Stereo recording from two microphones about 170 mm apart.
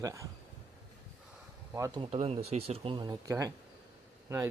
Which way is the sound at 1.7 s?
15° right (ahead or behind).